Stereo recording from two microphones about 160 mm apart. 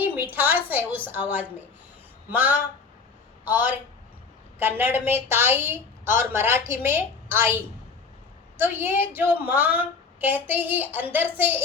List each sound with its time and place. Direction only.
0.0 s a woman's voice: 10° right (ahead or behind)